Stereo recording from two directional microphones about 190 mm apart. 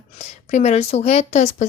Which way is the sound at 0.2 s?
35° left (ahead or behind).